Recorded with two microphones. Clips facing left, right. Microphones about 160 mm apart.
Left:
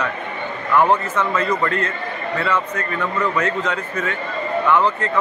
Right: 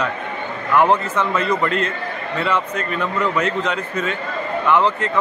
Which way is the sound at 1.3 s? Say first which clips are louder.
Right 1 dB; 20° right (ahead or behind).